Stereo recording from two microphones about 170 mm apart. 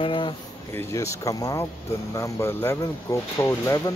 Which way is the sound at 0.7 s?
15° left (ahead or behind).